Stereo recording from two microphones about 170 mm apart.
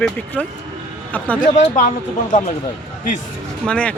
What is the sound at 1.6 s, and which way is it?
Speech, 45° left (ahead or behind).